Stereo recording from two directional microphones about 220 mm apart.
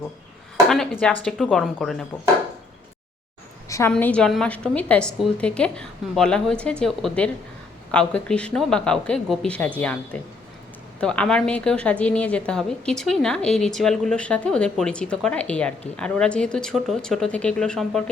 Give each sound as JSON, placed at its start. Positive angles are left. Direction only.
{"t": 0.7, "sound": "a woman's voice", "side_deg": 0}
{"t": 3.7, "sound": "a sound", "side_deg": 15}
{"t": 3.9, "sound": "a woman's voice", "side_deg": 5}